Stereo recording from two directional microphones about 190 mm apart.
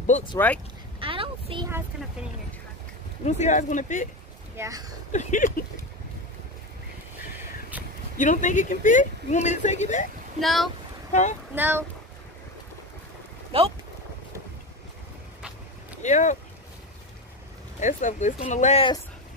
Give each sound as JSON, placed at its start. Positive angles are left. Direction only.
{"t": 0.4, "sound": "speech", "side_deg": 10}
{"t": 0.9, "sound": "a sound", "side_deg": -30}
{"t": 3.3, "sound": "speech", "side_deg": 40}
{"t": 4.6, "sound": "speech", "side_deg": -20}
{"t": 5.1, "sound": "speech", "side_deg": 40}
{"t": 8.2, "sound": "speech", "side_deg": 40}
{"t": 10.4, "sound": "speech", "side_deg": 0}
{"t": 11.1, "sound": "speech", "side_deg": 40}
{"t": 11.5, "sound": "speech", "side_deg": -10}
{"t": 16.0, "sound": "speech", "side_deg": 40}
{"t": 17.7, "sound": "speech", "side_deg": 40}